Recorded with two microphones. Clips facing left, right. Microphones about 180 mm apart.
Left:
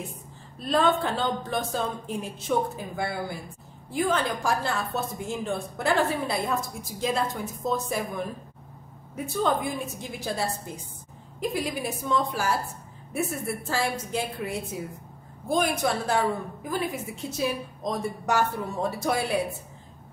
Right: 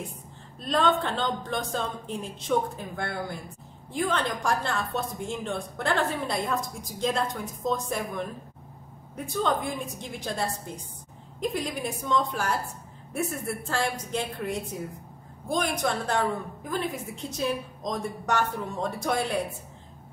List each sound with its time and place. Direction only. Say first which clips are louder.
0.6 s a woman's voice: left 1 dB; 5° left (ahead or behind)
13.7 s a woman's voice: left 1 dB; 5° left (ahead or behind)